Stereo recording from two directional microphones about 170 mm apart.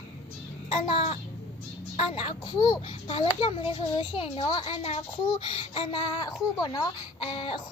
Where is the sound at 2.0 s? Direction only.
35° left (ahead or behind).